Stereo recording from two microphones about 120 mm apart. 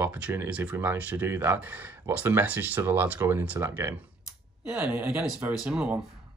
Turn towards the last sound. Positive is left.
turn(degrees=-10)  # may be behind; listen again after turning